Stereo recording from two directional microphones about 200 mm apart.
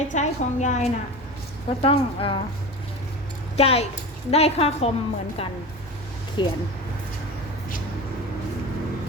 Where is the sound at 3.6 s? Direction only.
30° left (ahead or behind).